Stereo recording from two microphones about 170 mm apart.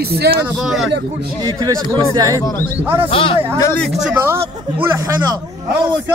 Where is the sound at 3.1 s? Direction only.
30° left (ahead or behind).